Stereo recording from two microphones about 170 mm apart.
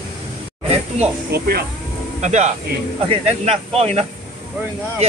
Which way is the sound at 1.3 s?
65° right (ahead or behind).